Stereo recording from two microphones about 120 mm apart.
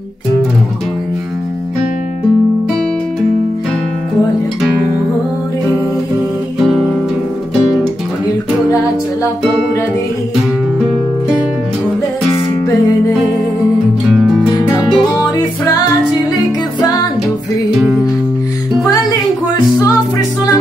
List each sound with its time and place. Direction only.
14.9 s music: 30° left (ahead or behind)
17.7 s music: 5° right (ahead or behind)